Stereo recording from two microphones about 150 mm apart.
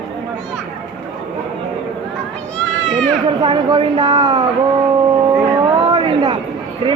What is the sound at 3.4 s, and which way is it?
A woman's voice, 30° right (ahead or behind).